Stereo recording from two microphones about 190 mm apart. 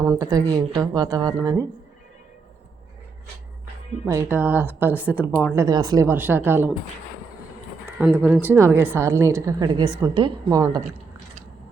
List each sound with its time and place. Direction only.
0.0 s speech: 20° right (ahead or behind)
4.0 s a woman's voice: 10° right (ahead or behind)
5.5 s a woman's voice: 20° right (ahead or behind)
7.9 s a woman's voice: 5° right (ahead or behind)